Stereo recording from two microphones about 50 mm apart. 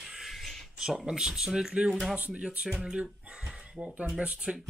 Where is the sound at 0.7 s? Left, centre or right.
Centre.